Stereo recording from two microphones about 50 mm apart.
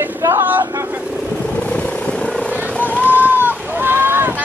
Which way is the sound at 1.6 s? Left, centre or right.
Left.